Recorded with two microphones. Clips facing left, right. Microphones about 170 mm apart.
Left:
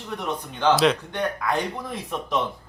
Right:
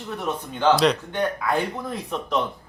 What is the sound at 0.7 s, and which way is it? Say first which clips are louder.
Speech: even; centre (ahead or behind).